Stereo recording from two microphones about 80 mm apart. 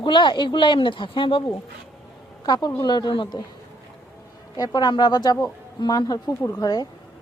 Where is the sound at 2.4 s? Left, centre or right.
Left.